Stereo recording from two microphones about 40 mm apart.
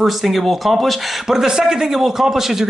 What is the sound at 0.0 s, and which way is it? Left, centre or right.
Speech, centre.